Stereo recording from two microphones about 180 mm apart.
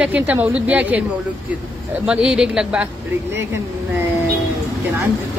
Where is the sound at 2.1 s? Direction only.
5° right (ahead or behind).